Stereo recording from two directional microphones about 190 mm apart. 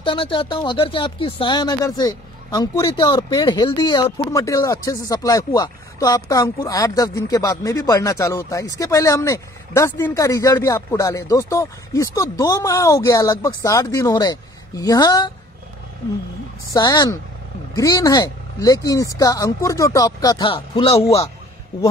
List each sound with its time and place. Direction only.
0.0 s speech: 25° left (ahead or behind)
16.7 s speech: 20° left (ahead or behind)